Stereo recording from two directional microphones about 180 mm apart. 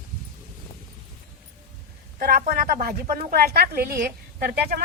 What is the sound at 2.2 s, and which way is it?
A woman's voice, 50° right (ahead or behind).